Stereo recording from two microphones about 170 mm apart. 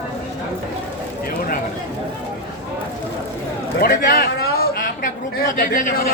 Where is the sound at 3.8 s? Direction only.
60° left (ahead or behind).